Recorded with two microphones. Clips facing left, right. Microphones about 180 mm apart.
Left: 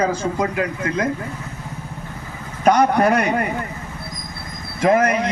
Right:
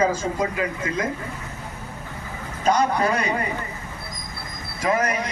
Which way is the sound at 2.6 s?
60° left (ahead or behind).